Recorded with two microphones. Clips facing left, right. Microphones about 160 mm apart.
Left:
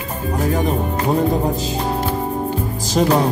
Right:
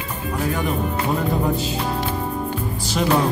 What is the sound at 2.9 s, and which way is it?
Music, 40° left (ahead or behind).